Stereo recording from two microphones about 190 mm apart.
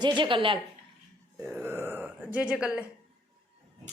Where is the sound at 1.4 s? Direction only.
10° right (ahead or behind).